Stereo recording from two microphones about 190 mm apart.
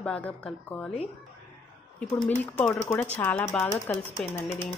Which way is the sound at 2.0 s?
10° left (ahead or behind).